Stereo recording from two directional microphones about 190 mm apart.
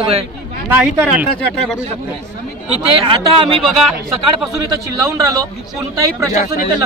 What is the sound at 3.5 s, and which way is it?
Speech, centre (ahead or behind).